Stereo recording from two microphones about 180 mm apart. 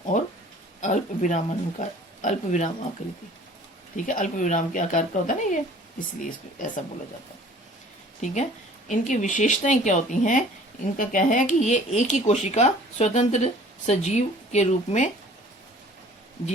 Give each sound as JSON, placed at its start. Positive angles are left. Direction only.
{"t": 0.1, "sound": "speech", "side_deg": 45}
{"t": 3.9, "sound": "speech", "side_deg": 45}
{"t": 8.2, "sound": "speech", "side_deg": 40}